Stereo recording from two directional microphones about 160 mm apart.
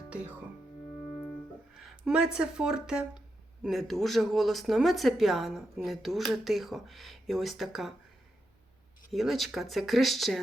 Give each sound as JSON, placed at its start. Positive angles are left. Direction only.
{"t": 0.1, "sound": "speech", "side_deg": -10}
{"t": 1.8, "sound": "speech", "side_deg": 0}
{"t": 9.1, "sound": "speech", "side_deg": 0}